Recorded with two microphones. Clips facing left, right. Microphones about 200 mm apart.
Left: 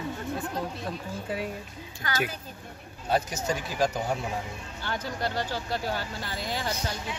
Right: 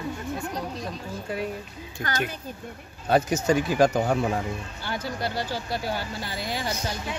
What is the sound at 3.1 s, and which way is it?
Speech, 60° right (ahead or behind).